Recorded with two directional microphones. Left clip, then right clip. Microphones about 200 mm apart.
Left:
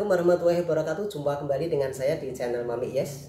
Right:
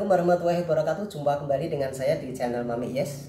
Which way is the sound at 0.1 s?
20° left (ahead or behind).